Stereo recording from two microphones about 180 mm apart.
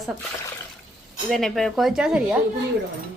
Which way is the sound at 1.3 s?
Centre (ahead or behind).